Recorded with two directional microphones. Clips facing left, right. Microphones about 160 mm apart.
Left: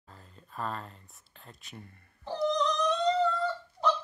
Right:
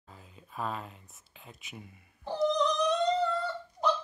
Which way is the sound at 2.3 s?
15° right (ahead or behind).